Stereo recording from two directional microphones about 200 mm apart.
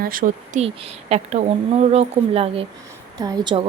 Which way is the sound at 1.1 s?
35° right (ahead or behind).